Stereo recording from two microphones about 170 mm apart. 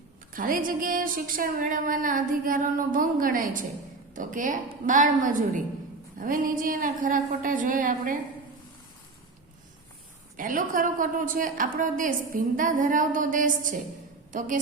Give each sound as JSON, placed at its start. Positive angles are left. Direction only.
{"t": 0.3, "sound": "a woman's voice", "side_deg": -55}
{"t": 10.3, "sound": "a woman's voice", "side_deg": -55}